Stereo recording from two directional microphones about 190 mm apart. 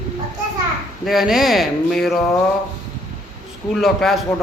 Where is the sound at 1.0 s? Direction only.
Centre (ahead or behind).